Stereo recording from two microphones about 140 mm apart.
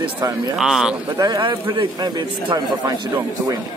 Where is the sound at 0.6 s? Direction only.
5° right (ahead or behind).